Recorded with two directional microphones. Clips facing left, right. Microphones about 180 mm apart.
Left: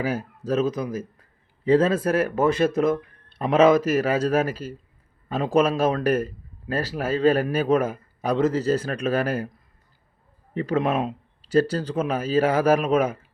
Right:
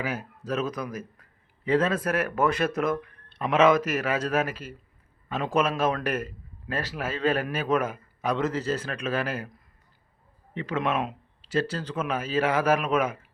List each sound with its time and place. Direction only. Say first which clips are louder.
0.0 s a man's voice: left 5 dB; 35° left (ahead or behind)
10.5 s a man's voice: left 5 dB; 40° left (ahead or behind)